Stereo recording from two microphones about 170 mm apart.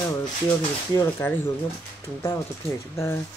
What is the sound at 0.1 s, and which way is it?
Speech, 20° left (ahead or behind).